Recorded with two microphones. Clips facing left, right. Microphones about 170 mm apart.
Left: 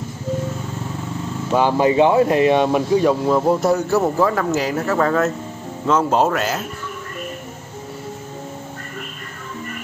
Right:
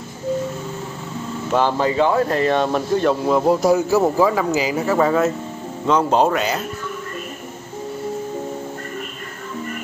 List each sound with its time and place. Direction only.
1.5 s speech: 10° left (ahead or behind)
3.3 s a man's voice: 5° right (ahead or behind)